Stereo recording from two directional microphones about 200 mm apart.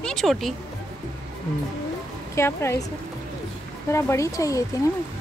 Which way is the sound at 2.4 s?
15° left (ahead or behind).